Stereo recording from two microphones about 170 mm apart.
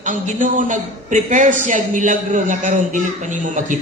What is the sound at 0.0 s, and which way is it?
A man's voice, 50° right (ahead or behind).